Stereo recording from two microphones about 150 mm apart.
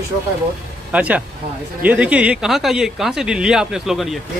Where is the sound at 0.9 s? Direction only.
10° right (ahead or behind).